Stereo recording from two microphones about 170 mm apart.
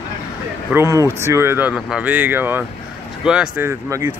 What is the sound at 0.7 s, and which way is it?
Speech, 15° right (ahead or behind).